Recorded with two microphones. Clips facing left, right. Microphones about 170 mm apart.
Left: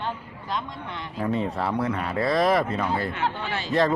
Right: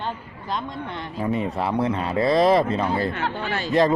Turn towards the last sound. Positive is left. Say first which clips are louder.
# right 2 dB
turn(degrees=-45)  # may be behind; listen again after turning